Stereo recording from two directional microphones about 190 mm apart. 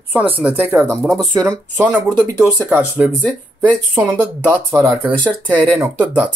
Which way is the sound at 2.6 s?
10° right (ahead or behind).